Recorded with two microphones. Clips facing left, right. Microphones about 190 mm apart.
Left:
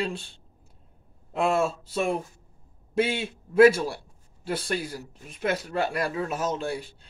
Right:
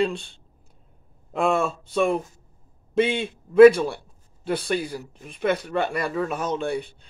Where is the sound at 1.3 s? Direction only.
50° right (ahead or behind).